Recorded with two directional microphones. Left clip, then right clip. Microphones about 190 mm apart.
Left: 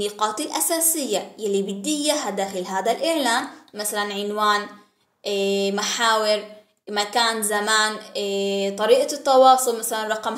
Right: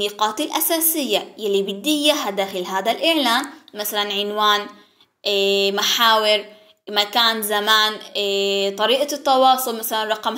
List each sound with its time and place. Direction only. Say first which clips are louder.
0.0 s a woman's voice: right 3 dB; 15° right (ahead or behind)